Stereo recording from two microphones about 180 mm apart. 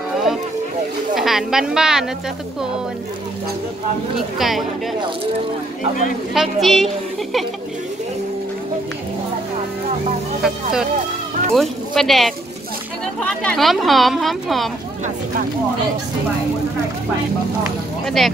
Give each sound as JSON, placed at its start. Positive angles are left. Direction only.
{"t": 1.1, "sound": "speech", "side_deg": 0}
{"t": 4.4, "sound": "speech", "side_deg": 0}
{"t": 6.3, "sound": "speech", "side_deg": 0}
{"t": 10.4, "sound": "speech", "side_deg": -5}
{"t": 18.0, "sound": "speech", "side_deg": 0}